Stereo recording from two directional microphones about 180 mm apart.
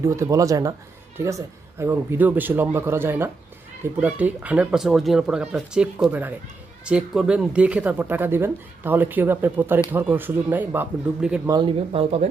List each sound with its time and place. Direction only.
0.0 s speech: 15° right (ahead or behind)
11.4 s speech: 25° right (ahead or behind)